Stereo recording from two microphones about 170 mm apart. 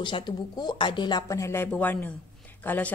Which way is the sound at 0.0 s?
25° left (ahead or behind).